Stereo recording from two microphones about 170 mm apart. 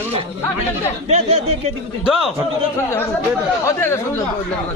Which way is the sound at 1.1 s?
40° right (ahead or behind).